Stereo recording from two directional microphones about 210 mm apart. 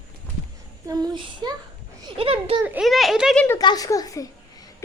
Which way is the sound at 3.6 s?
20° left (ahead or behind).